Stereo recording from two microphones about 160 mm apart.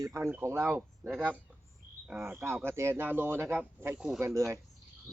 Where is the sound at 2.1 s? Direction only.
15° right (ahead or behind).